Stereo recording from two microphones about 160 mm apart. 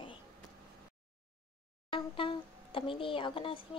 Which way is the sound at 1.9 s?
35° left (ahead or behind).